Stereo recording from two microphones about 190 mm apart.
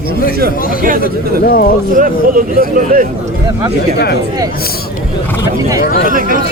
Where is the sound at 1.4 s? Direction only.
50° left (ahead or behind).